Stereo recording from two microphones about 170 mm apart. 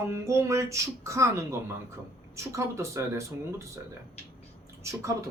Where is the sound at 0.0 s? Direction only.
15° right (ahead or behind).